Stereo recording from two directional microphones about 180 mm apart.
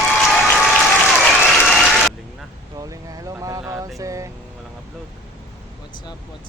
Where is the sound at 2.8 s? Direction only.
20° right (ahead or behind).